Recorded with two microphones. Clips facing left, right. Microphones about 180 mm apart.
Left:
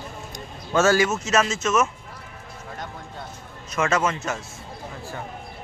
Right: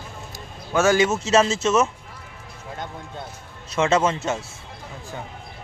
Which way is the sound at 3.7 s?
30° right (ahead or behind).